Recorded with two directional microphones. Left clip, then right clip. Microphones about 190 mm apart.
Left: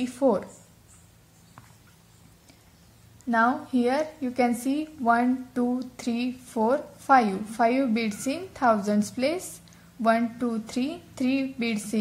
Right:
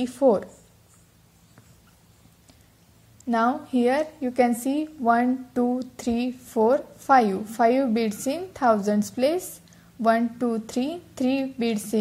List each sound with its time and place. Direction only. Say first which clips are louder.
0.0 s a woman's voice: right 4 dB; 20° right (ahead or behind)
3.3 s a woman's voice: even; 25° right (ahead or behind)